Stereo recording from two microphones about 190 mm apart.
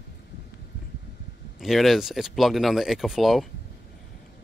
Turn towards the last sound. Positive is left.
turn(degrees=0)  # may be behind; listen again after turning